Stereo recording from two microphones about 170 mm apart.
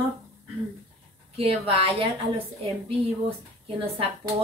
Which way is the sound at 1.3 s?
35° right (ahead or behind).